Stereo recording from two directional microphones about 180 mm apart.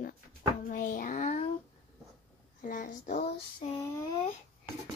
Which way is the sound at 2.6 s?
45° left (ahead or behind).